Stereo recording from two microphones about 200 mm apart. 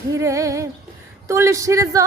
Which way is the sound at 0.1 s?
15° right (ahead or behind).